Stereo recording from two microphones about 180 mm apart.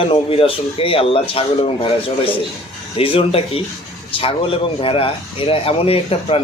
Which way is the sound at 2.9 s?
30° left (ahead or behind).